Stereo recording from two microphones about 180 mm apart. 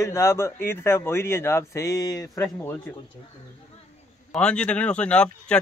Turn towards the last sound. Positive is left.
turn(degrees=5)  # may be behind; listen again after turning